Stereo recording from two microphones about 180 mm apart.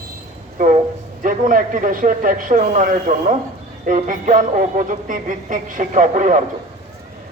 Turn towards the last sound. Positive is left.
turn(degrees=-45)  # may be behind; listen again after turning